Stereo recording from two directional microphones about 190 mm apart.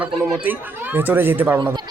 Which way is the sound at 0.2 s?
Centre (ahead or behind).